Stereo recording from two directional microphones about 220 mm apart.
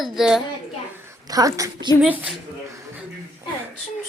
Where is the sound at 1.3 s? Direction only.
15° right (ahead or behind).